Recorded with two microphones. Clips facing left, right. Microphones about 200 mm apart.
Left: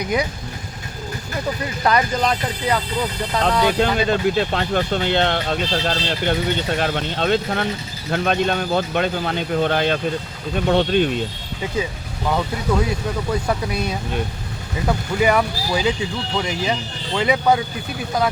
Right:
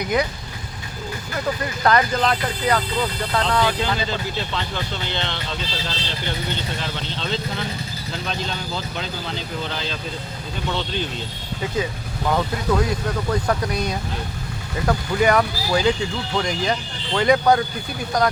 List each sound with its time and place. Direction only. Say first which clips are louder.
1.8 s speech: even; 10° left (ahead or behind)
3.8 s speech: left 6 dB; 55° left (ahead or behind)
12.3 s speech: even; 5° left (ahead or behind)